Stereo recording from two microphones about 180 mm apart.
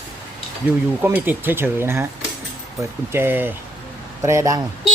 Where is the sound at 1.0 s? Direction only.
10° right (ahead or behind).